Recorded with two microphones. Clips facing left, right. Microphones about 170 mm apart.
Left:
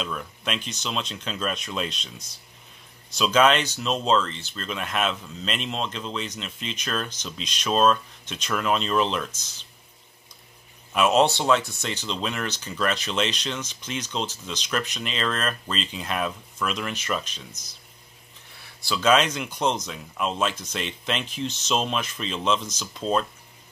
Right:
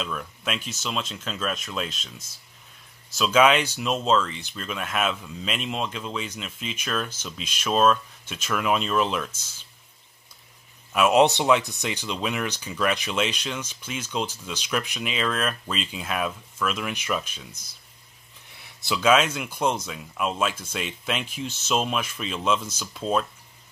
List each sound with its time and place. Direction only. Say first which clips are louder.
0.0 s speech: even; centre (ahead or behind)
10.9 s speech: right 1 dB; 10° right (ahead or behind)
18.6 s a sound: right 1 dB; 20° right (ahead or behind)
19.0 s speech: even; 5° right (ahead or behind)